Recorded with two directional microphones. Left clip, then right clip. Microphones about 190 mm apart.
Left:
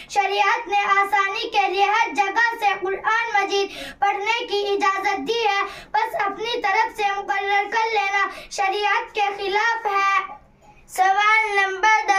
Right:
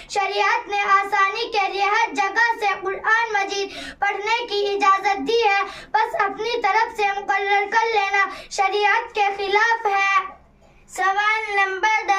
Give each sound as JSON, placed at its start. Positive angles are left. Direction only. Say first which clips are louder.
{"t": 0.1, "sound": "child singing", "louder": "left 1 dB", "side_deg": -15}
{"t": 10.9, "sound": "child singing", "louder": "left 3 dB", "side_deg": 15}